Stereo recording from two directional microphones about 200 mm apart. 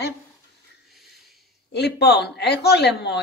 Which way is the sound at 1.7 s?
55° left (ahead or behind).